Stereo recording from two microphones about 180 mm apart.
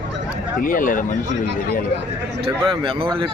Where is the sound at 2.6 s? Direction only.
30° right (ahead or behind).